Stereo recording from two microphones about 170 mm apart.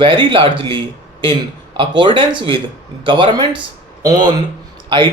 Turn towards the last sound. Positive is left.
turn(degrees=-30)  # may be behind; listen again after turning